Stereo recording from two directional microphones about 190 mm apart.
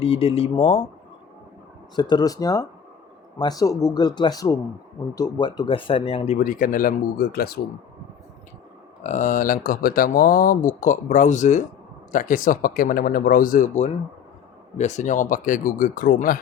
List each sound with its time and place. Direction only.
0.0 s speech: 30° left (ahead or behind)
2.0 s speech: 20° left (ahead or behind); by 7.6 s 55° left (ahead or behind)
9.0 s speech: 40° left (ahead or behind)